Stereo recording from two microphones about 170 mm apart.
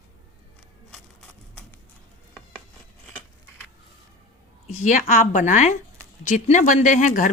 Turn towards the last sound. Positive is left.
turn(degrees=50)  # may be behind; listen again after turning